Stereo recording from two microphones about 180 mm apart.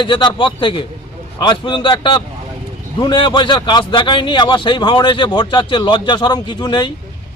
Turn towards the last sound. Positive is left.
turn(degrees=25)  # may be behind; listen again after turning